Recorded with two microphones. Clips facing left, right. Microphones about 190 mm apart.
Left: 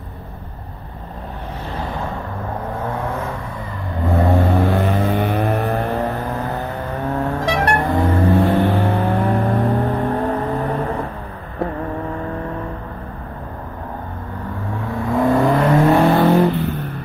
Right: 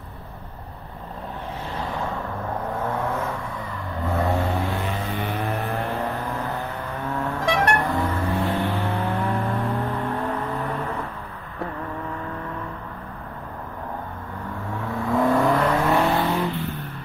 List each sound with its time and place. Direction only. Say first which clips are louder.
2.8 s vehicle: left 2 dB; 10° left (ahead or behind)
4.1 s vehicle: left 6 dB; 35° left (ahead or behind)
4.5 s vehicle: left 8 dB; 55° left (ahead or behind)
5.6 s vehicle: left 6 dB; 40° left (ahead or behind)
7.1 s vehicle: left 4 dB; 40° left (ahead or behind)
15.0 s vehicle: left 4 dB; 20° left (ahead or behind)
16.0 s vehicle: left 8 dB; 50° left (ahead or behind)